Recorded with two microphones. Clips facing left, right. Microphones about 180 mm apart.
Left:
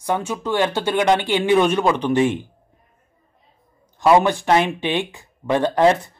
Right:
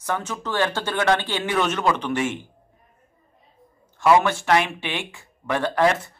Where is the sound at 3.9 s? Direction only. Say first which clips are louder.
Left 3 dB; 20° left (ahead or behind).